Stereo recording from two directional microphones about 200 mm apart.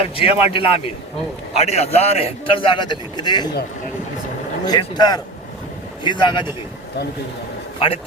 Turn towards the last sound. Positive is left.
turn(degrees=30)  # may be behind; listen again after turning